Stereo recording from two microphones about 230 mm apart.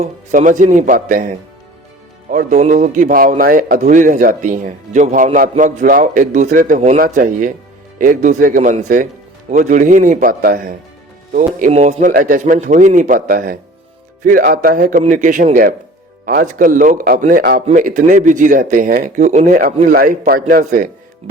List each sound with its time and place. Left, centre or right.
0.0 s a man's voice: right
2.3 s a man's voice: right